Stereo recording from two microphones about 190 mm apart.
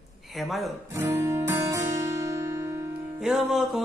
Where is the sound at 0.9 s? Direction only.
15° right (ahead or behind).